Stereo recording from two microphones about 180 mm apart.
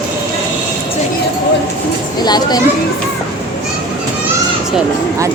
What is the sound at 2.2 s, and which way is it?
Speech, 20° left (ahead or behind).